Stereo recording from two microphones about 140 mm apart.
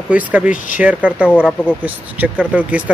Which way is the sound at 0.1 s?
10° right (ahead or behind).